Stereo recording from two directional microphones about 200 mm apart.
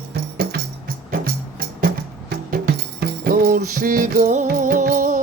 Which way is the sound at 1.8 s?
50° right (ahead or behind).